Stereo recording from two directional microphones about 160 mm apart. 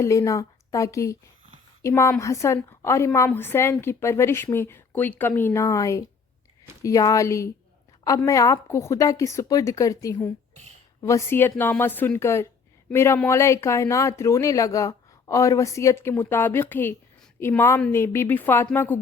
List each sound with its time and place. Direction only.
0.0 s a woman's voice: 20° left (ahead or behind)